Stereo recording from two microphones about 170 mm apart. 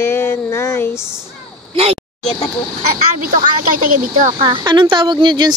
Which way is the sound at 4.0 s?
50° right (ahead or behind).